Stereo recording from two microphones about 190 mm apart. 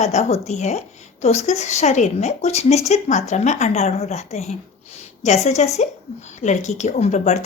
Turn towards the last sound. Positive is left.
turn(degrees=35)  # may be behind; listen again after turning